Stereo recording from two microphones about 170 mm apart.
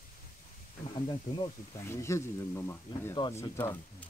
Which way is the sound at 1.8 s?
15° left (ahead or behind).